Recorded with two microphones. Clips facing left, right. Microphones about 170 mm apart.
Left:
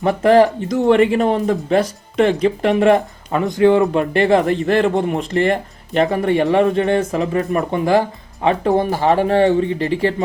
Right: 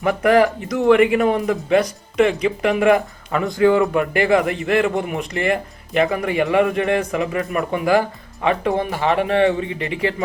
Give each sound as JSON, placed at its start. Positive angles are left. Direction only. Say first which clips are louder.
{"t": 0.0, "sound": "speech", "louder": "left 3 dB", "side_deg": 30}